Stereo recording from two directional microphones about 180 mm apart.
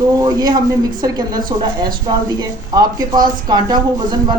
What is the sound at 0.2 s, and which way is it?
A woman's voice, 20° right (ahead or behind).